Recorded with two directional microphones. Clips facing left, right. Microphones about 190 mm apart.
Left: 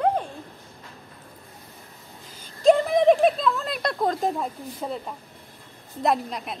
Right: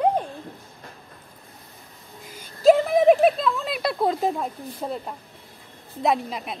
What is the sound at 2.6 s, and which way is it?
Speech, 5° right (ahead or behind).